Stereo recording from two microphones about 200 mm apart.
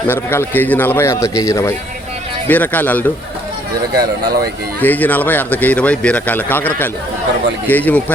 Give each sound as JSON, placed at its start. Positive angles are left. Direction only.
{"t": 0.1, "sound": "speech", "side_deg": 10}
{"t": 3.9, "sound": "speech", "side_deg": -50}
{"t": 4.8, "sound": "speech", "side_deg": 10}